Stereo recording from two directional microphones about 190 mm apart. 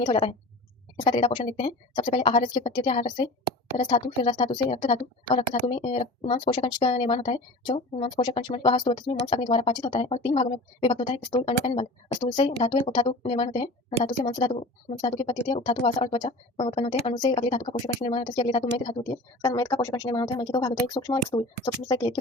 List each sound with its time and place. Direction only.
0.0 s speech: 25° left (ahead or behind)
19.4 s speech: 15° left (ahead or behind)